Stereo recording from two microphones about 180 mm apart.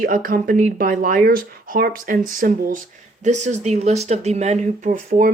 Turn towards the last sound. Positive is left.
turn(degrees=-50)  # may be behind; listen again after turning